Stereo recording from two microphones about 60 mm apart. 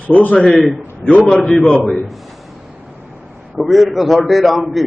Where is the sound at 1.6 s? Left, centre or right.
Centre.